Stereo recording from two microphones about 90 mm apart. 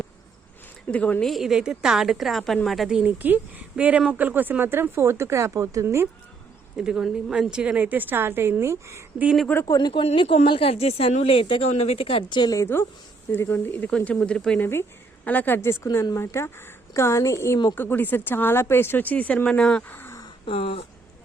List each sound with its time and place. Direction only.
0.9 s speech: 15° left (ahead or behind)
1.2 s a woman's voice: centre (ahead or behind)
3.0 s a woman's voice: 20° right (ahead or behind)
6.7 s a woman's voice: 10° right (ahead or behind); by 9.0 s 35° right (ahead or behind)
9.7 s a woman's voice: 50° left (ahead or behind)
10.0 s speech: 75° left (ahead or behind)
12.7 s speech: 25° left (ahead or behind)
13.9 s speech: 10° left (ahead or behind)
14.6 s a woman's voice: 25° left (ahead or behind); by 19.8 s 10° left (ahead or behind)
19.9 s a sound: 25° left (ahead or behind)
20.4 s speech: 90° left